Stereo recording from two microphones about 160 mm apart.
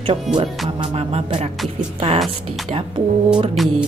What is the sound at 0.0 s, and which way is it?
Music, 30° right (ahead or behind).